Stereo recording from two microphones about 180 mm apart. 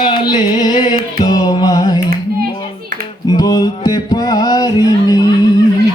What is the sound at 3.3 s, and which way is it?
Music, 20° left (ahead or behind).